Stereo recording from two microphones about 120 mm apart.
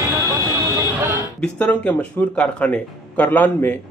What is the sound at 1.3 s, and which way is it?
Speech, 10° left (ahead or behind).